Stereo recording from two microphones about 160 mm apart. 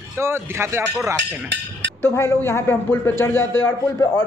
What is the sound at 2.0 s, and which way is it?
Speech, 15° left (ahead or behind).